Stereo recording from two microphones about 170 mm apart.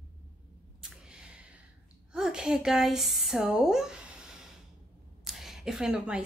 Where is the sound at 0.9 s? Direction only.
5° right (ahead or behind).